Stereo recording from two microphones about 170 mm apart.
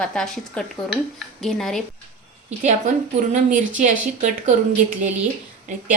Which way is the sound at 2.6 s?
45° right (ahead or behind).